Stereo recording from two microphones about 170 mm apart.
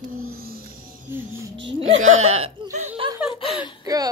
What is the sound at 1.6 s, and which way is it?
A woman's voice, 30° right (ahead or behind).